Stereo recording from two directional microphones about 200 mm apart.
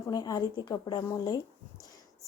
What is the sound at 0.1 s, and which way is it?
Speech, 20° left (ahead or behind).